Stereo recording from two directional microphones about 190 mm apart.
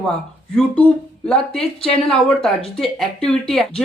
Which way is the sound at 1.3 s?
5° left (ahead or behind).